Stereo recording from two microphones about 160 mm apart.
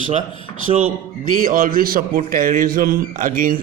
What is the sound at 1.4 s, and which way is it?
A man's voice, 60° right (ahead or behind).